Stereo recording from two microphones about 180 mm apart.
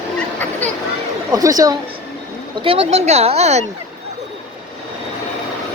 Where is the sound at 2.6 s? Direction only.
30° right (ahead or behind).